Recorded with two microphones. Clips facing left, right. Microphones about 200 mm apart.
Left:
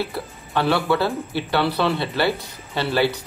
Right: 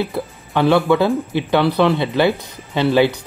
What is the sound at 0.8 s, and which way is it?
Speech, 20° right (ahead or behind).